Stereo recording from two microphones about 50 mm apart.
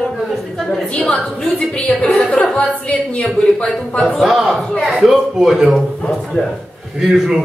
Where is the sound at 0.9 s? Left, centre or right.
Centre.